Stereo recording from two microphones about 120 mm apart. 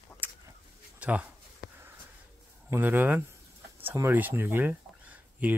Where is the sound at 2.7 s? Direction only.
15° right (ahead or behind).